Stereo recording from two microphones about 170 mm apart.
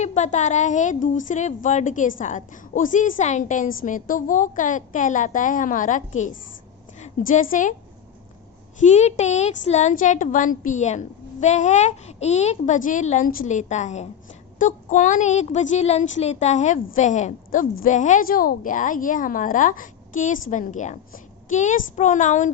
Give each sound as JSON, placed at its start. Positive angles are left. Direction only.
{"t": 0.0, "sound": "a woman's voice", "side_deg": 45}
{"t": 8.8, "sound": "a woman's voice", "side_deg": 45}